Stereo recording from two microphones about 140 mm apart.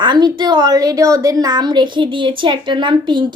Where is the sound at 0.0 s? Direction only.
35° right (ahead or behind).